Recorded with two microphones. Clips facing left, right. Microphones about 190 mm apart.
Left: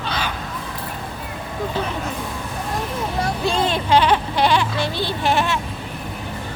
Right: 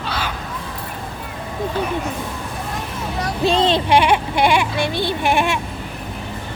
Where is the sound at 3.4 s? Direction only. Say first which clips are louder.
Right 5 dB; 20° right (ahead or behind).